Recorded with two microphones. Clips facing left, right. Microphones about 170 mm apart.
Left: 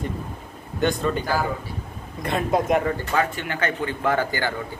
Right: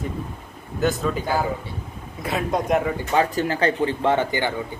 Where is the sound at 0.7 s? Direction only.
5° right (ahead or behind).